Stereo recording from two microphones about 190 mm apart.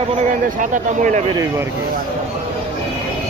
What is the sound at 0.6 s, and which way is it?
Speech, 40° right (ahead or behind).